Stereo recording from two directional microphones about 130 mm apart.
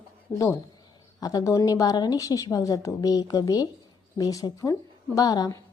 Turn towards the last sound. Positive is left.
turn(degrees=30)  # may be behind; listen again after turning